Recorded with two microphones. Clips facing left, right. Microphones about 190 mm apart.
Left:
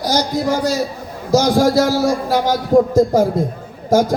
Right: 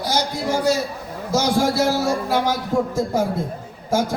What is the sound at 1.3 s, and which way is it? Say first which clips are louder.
A man's voice: left 6 dB; 40° left (ahead or behind).